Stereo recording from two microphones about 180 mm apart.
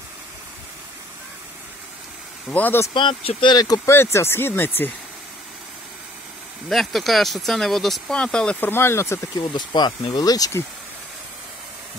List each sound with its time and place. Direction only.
2.5 s speech: 10° left (ahead or behind)
2.9 s speech: 30° left (ahead or behind); by 4.9 s 10° left (ahead or behind)
6.7 s speech: centre (ahead or behind)
9.4 s speech: 25° left (ahead or behind)